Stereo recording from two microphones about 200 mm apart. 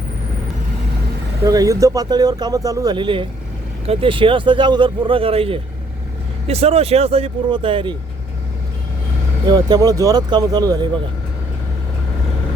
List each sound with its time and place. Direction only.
1.5 s speech: 15° right (ahead or behind)
9.5 s speech: 20° right (ahead or behind)